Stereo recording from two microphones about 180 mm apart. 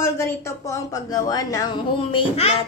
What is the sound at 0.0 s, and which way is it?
A woman's voice, 15° left (ahead or behind).